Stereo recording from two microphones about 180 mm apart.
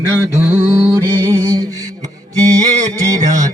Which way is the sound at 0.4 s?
20° right (ahead or behind).